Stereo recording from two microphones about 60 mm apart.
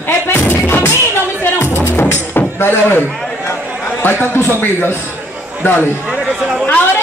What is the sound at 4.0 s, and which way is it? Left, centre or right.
Speech, left.